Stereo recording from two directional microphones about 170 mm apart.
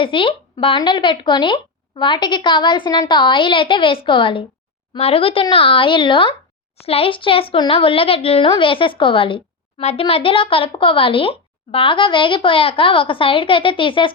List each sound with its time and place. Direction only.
0.0 s a woman's voice: 30° left (ahead or behind)